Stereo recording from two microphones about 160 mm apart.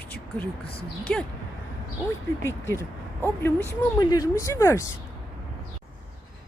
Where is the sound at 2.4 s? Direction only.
15° left (ahead or behind).